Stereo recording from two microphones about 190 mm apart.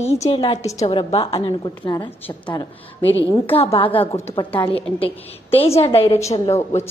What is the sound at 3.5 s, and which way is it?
A woman's voice, 30° left (ahead or behind).